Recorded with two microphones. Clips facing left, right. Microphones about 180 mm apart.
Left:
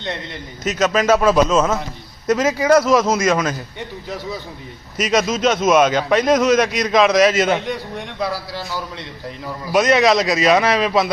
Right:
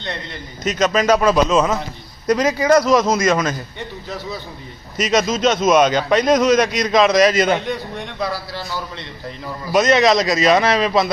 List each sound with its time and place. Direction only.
0.6 s a man's voice: 5° left (ahead or behind)
4.9 s a man's voice: 10° left (ahead or behind)